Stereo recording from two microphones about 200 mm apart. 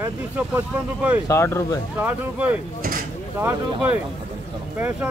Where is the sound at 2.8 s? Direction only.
45° right (ahead or behind).